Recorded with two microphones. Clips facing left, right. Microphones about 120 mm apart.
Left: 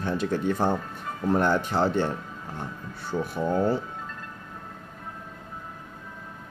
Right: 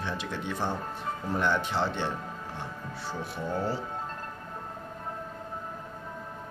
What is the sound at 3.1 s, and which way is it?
Speech, 50° left (ahead or behind).